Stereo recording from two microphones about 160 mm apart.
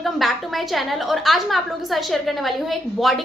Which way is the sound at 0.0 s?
Centre (ahead or behind).